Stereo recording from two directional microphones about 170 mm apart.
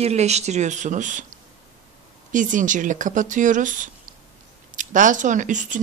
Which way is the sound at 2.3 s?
50° right (ahead or behind).